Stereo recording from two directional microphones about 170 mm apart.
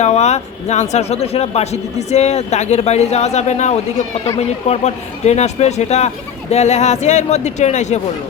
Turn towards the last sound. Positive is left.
turn(degrees=40)  # may be behind; listen again after turning